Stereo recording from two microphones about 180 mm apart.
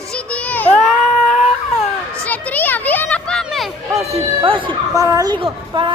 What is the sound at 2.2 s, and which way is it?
Children playing, 10° left (ahead or behind).